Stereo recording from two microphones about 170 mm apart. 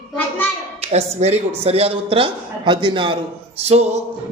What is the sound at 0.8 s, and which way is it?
Speech, 40° right (ahead or behind).